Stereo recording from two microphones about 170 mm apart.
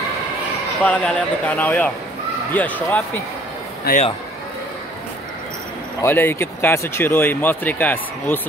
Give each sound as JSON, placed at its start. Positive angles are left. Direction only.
{"t": 0.8, "sound": "speech", "side_deg": 5}
{"t": 3.9, "sound": "a man's voice", "side_deg": 65}
{"t": 6.0, "sound": "speech", "side_deg": 10}